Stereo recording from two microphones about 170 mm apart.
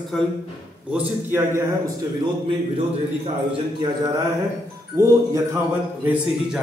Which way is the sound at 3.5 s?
25° right (ahead or behind).